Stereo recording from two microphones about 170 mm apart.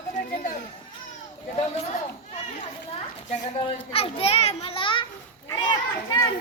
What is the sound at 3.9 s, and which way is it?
A child's voice, 35° left (ahead or behind).